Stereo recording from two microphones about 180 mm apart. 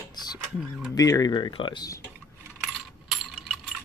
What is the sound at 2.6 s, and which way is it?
Coin, centre (ahead or behind).